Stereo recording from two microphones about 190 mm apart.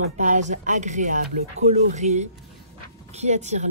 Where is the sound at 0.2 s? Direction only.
40° right (ahead or behind).